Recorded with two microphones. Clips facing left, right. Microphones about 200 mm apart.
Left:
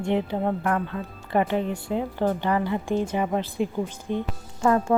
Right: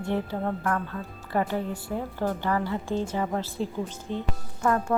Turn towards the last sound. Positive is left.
turn(degrees=25)  # may be behind; listen again after turning